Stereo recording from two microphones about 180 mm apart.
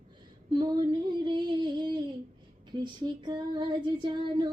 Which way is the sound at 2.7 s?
25° right (ahead or behind).